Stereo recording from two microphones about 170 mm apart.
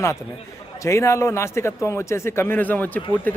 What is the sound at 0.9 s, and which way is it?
A man's voice, 15° left (ahead or behind).